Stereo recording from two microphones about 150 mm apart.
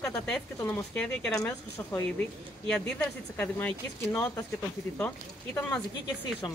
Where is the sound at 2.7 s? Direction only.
5° left (ahead or behind).